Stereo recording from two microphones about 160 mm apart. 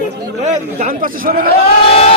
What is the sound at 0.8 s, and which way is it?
Speech, 60° right (ahead or behind).